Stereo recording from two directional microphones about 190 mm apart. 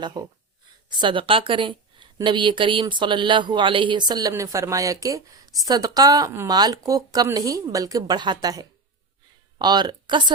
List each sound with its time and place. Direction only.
0.0 s a woman's voice: 20° right (ahead or behind)